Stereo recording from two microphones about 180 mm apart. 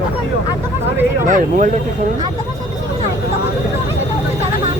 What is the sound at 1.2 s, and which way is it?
Speech, 45° right (ahead or behind).